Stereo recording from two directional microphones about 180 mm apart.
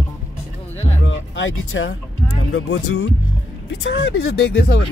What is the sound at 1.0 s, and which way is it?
Music, 90° left.